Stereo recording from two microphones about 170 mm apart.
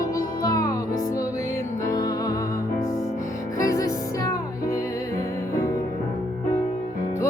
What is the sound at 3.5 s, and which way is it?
Music, 20° left (ahead or behind).